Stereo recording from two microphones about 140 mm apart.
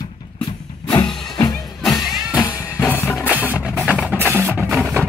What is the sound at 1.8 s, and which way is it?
Music, centre (ahead or behind).